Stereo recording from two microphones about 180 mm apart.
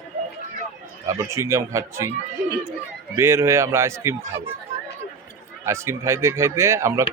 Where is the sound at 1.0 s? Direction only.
15° right (ahead or behind).